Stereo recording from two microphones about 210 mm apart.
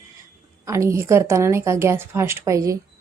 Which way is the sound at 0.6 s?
15° right (ahead or behind).